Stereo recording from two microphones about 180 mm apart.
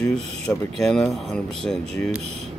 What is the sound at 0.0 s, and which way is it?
Speech, 5° left (ahead or behind).